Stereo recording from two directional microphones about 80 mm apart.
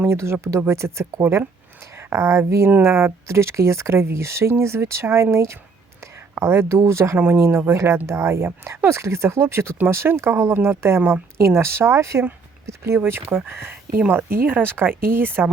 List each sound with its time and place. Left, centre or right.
0.1 s speech: right
2.6 s speech: right
3.0 s speech: right